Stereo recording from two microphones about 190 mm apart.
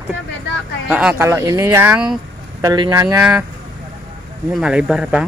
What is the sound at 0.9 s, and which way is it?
Speech, 5° right (ahead or behind).